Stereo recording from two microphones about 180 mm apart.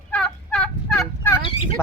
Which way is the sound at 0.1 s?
5° left (ahead or behind).